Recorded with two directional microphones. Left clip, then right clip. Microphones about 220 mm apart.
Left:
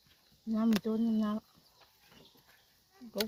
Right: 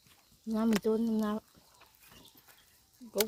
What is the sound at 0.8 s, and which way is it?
Speech, 50° right (ahead or behind).